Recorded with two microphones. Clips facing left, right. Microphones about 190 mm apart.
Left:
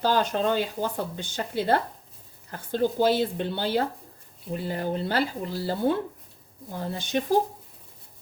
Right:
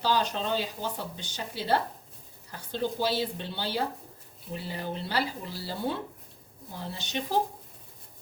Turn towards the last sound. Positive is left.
turn(degrees=50)  # may be behind; listen again after turning